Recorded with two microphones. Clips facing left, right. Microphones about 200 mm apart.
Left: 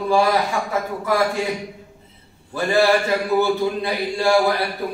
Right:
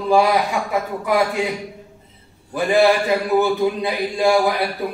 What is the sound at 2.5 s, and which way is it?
A man's voice, 15° right (ahead or behind).